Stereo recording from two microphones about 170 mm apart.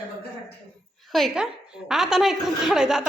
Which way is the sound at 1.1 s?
Centre (ahead or behind).